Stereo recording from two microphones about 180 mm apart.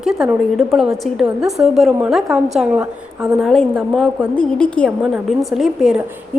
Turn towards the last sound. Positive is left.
turn(degrees=-5)  # may be behind; listen again after turning